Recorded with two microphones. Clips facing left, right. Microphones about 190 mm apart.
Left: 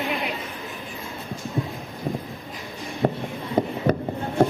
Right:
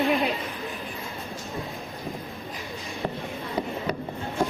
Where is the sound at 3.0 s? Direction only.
45° left (ahead or behind).